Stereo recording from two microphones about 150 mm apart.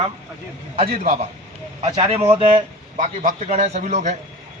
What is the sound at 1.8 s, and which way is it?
Speech, 40° right (ahead or behind).